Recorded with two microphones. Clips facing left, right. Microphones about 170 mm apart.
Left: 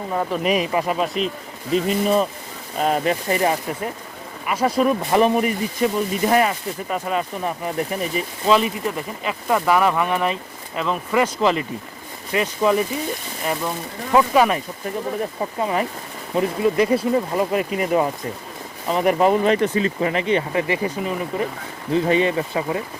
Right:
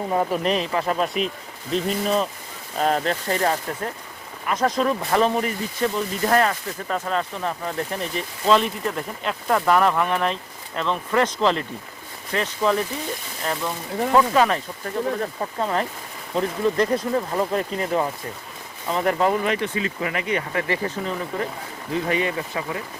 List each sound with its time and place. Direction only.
0.1 s speech: 15° right (ahead or behind)
0.4 s speech: 10° left (ahead or behind)
0.9 s speech: centre (ahead or behind); by 19.4 s 20° left (ahead or behind)
19.4 s speech: 35° left (ahead or behind); by 21.4 s 10° left (ahead or behind)
21.9 s speech: 25° left (ahead or behind)